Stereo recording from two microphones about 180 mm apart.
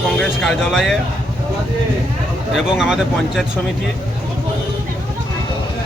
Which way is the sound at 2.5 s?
5° right (ahead or behind).